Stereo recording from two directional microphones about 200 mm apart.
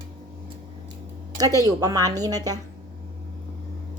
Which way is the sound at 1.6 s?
15° right (ahead or behind).